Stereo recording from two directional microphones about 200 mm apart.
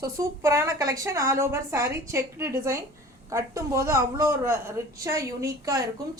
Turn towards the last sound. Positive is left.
turn(degrees=-15)  # may be behind; listen again after turning